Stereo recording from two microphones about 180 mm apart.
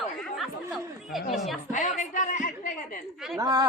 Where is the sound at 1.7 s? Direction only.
45° left (ahead or behind).